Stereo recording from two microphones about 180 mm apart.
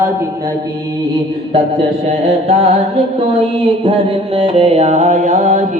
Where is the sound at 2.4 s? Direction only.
35° right (ahead or behind).